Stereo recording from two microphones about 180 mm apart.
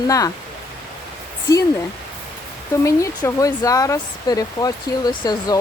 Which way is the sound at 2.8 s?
15° left (ahead or behind).